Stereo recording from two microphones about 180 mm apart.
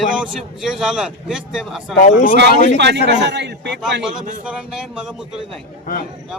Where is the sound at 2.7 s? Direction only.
70° right (ahead or behind).